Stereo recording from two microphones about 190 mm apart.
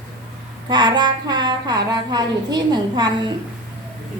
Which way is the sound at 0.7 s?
20° right (ahead or behind).